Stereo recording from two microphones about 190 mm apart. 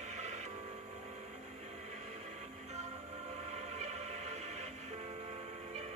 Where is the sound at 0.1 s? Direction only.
35° right (ahead or behind).